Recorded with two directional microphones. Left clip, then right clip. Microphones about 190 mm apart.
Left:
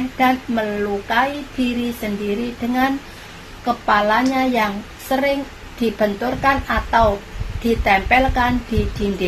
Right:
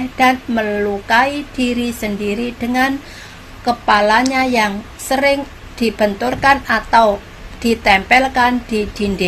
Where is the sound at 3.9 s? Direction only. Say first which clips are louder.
Right 4 dB; 40° right (ahead or behind).